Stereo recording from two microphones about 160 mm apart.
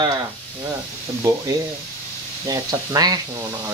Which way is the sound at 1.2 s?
20° right (ahead or behind).